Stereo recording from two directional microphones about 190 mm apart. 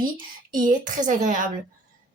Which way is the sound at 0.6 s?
45° right (ahead or behind).